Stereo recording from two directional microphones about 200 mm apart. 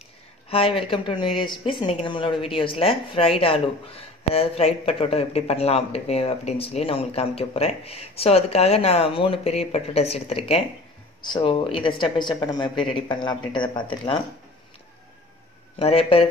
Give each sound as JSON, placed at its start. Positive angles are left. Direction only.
{"t": 0.5, "sound": "speech", "side_deg": 30}
{"t": 15.8, "sound": "speech", "side_deg": 30}